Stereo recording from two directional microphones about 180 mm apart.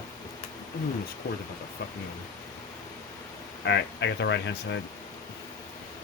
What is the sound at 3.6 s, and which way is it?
Speech, 70° left (ahead or behind).